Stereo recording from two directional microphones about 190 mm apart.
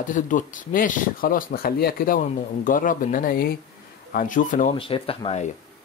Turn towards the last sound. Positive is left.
turn(degrees=35)  # may be behind; listen again after turning